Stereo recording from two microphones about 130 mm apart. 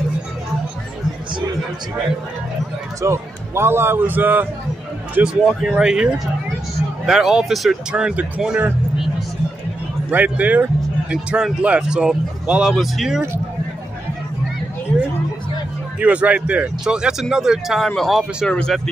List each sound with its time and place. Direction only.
3.0 s speech: 20° right (ahead or behind)
10.0 s speech: 10° right (ahead or behind)
16.0 s speech: 10° right (ahead or behind)